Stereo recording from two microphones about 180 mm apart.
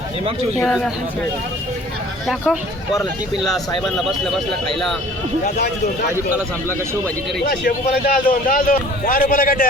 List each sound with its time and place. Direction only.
0.6 s speech: centre (ahead or behind)
2.2 s speech: centre (ahead or behind)
7.6 s a man's voice: 55° left (ahead or behind)